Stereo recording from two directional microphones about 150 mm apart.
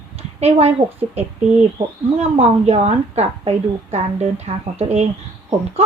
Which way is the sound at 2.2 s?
45° right (ahead or behind).